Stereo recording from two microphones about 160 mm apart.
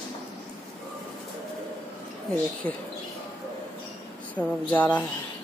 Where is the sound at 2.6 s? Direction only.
10° left (ahead or behind).